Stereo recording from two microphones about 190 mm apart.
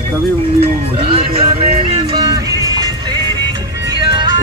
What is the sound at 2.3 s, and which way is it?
Music, 20° right (ahead or behind).